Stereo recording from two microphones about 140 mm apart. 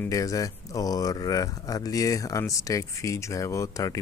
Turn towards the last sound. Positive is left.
turn(degrees=25)  # may be behind; listen again after turning